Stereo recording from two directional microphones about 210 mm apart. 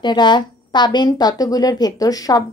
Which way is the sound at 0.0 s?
20° left (ahead or behind).